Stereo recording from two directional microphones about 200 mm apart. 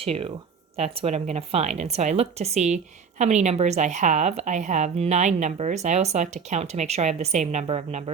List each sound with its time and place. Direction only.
0.0 s a woman's voice: 30° right (ahead or behind)